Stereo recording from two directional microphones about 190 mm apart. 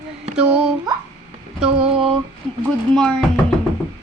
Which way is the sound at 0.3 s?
5° right (ahead or behind).